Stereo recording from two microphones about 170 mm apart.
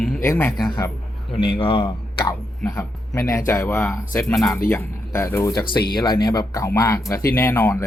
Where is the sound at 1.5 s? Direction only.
30° left (ahead or behind).